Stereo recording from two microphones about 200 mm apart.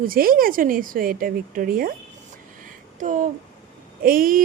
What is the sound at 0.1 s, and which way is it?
A woman's voice, 45° right (ahead or behind).